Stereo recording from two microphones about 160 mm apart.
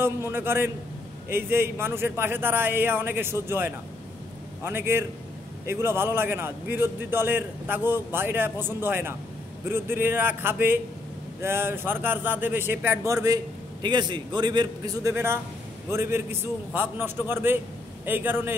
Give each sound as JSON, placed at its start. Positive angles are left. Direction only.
{"t": 0.0, "sound": "a man's voice", "side_deg": -15}